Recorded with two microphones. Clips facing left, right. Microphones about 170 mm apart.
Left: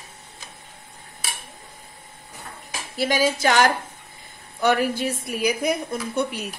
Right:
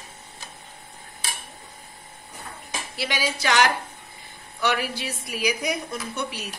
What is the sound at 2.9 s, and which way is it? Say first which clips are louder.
A woman's voice: left 8 dB; 45° left (ahead or behind).